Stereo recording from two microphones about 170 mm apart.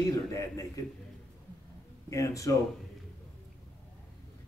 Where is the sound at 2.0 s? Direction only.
20° left (ahead or behind).